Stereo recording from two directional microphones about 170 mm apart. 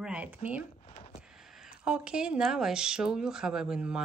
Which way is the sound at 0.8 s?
35° left (ahead or behind).